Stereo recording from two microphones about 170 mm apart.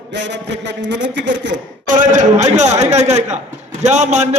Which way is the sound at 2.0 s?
45° right (ahead or behind).